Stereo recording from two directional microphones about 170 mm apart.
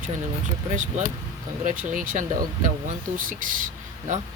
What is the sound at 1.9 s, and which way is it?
Speech, 50° right (ahead or behind).